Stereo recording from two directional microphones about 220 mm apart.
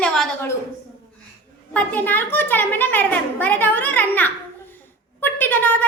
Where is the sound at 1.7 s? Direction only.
5° left (ahead or behind).